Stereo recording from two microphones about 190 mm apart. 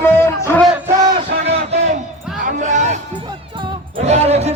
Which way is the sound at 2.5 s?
40° right (ahead or behind).